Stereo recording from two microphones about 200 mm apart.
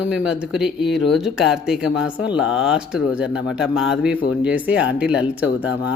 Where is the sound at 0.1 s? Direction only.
5° right (ahead or behind).